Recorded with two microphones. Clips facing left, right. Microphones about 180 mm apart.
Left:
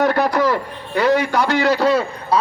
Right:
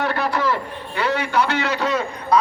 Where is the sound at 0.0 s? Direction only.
40° left (ahead or behind).